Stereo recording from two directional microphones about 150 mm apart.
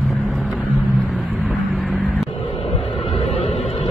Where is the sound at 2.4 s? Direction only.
45° left (ahead or behind).